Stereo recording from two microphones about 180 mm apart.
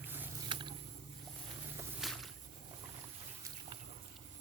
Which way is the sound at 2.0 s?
Centre (ahead or behind).